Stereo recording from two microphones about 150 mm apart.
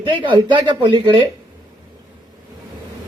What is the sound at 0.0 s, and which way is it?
Speech, 35° right (ahead or behind).